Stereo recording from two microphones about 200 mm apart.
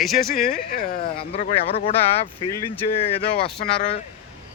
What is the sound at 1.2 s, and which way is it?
Speech, 30° left (ahead or behind).